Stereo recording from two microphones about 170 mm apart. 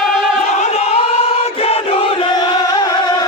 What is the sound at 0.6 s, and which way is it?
Chant, 40° left (ahead or behind).